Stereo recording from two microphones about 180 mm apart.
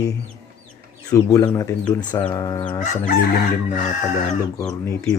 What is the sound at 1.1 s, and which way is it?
Speech, 15° left (ahead or behind).